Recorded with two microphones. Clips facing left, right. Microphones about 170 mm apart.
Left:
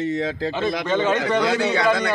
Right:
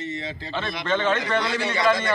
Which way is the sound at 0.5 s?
15° left (ahead or behind).